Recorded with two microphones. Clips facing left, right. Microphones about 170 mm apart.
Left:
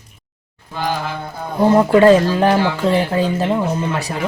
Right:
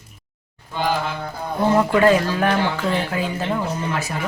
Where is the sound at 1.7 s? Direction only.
30° left (ahead or behind).